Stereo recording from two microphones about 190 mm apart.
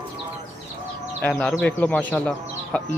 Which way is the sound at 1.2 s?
Centre (ahead or behind).